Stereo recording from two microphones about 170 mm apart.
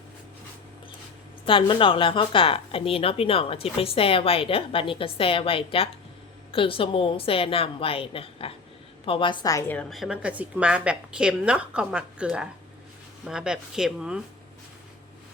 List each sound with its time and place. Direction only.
1.5 s a woman's voice: 30° left (ahead or behind)
9.9 s a woman's voice: centre (ahead or behind)